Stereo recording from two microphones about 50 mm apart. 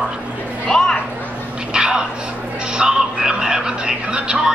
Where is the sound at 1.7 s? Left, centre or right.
Centre.